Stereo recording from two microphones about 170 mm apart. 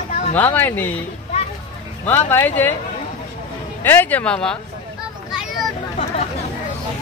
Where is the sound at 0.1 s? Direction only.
45° left (ahead or behind).